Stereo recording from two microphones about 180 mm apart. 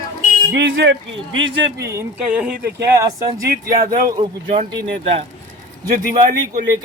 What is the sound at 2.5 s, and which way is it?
Speech, 65° right (ahead or behind).